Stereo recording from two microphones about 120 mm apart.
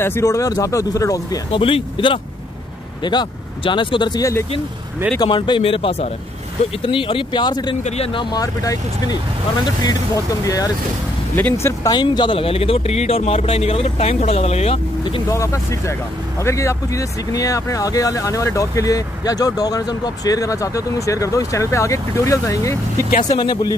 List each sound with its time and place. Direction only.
0.0 s speech: 25° left (ahead or behind)
1.5 s speech: 45° left (ahead or behind)
4.2 s speech: 25° left (ahead or behind)
5.2 s speech: 40° left (ahead or behind)
7.8 s speech: 65° left (ahead or behind)
8.1 s speech: 40° left (ahead or behind); by 11.9 s 20° left (ahead or behind)
11.9 s speech: 40° left (ahead or behind); by 14.8 s 60° left (ahead or behind)
15.2 s speech: 25° left (ahead or behind)